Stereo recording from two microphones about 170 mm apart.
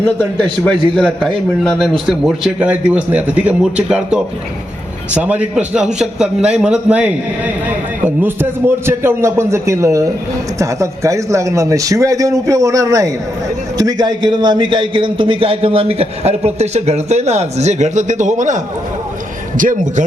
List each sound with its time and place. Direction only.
0.0 s a man's voice: 5° left (ahead or behind); by 20.1 s 50° right (ahead or behind)